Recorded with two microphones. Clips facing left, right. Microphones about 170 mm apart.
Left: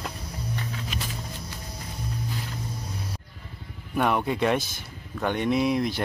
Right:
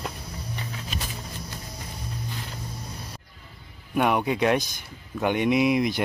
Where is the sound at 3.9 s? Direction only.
5° right (ahead or behind).